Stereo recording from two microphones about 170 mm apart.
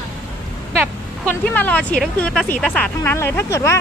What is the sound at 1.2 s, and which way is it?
Speech, 10° left (ahead or behind).